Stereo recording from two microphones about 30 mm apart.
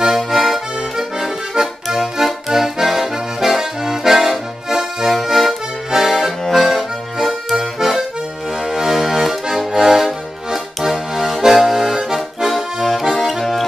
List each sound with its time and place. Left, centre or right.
0.0 s accordion: centre
8.6 s music: centre
8.9 s accordion: centre
13.2 s music: centre